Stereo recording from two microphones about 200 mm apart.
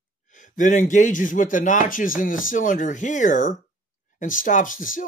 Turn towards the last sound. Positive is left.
turn(degrees=40)  # may be behind; listen again after turning